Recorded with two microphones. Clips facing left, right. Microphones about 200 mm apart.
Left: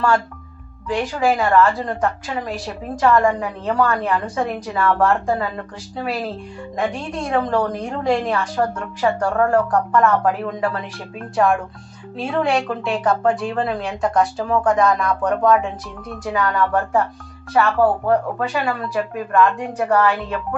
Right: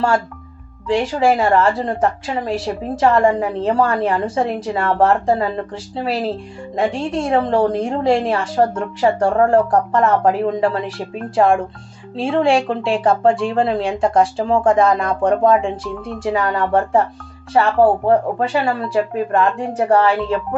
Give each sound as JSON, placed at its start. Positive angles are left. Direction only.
{"t": 0.8, "sound": "a woman's voice", "side_deg": -30}